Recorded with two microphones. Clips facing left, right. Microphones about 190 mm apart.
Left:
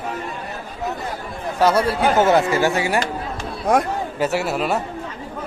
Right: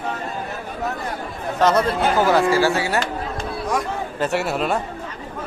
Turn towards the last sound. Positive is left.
turn(degrees=0)  # may be behind; listen again after turning